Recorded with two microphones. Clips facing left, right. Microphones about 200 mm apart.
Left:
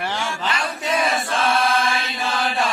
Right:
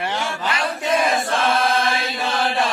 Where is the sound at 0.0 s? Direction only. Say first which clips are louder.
Right 1 dB; 20° right (ahead or behind).